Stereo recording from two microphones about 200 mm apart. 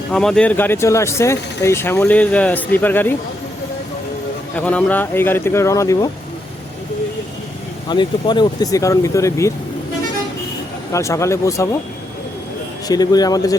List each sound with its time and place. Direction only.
0.1 s speech: 5° left (ahead or behind)
4.5 s speech: 5° left (ahead or behind)
7.9 s speech: 20° left (ahead or behind)
10.9 s speech: 15° left (ahead or behind)
12.9 s speech: 20° left (ahead or behind)